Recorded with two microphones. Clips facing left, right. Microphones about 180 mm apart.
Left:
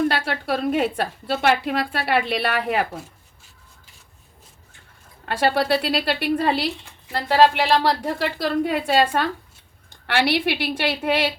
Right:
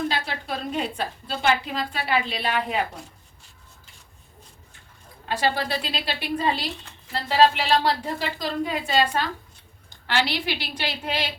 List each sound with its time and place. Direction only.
0.1 s a woman's voice: 65° left (ahead or behind)
5.5 s speech: 65° left (ahead or behind)